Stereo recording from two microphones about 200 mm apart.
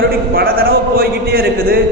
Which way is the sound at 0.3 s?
50° right (ahead or behind).